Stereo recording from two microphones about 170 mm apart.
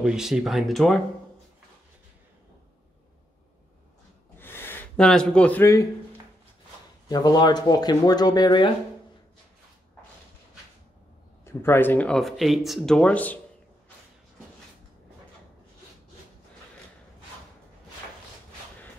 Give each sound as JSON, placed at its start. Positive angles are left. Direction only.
{"t": 0.0, "sound": "speech", "side_deg": -5}
{"t": 4.4, "sound": "a sound", "side_deg": 15}
{"t": 7.1, "sound": "speech", "side_deg": 25}
{"t": 11.4, "sound": "speech", "side_deg": 15}